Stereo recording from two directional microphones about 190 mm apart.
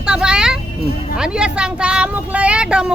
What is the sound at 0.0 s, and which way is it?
Vehicle, 5° right (ahead or behind).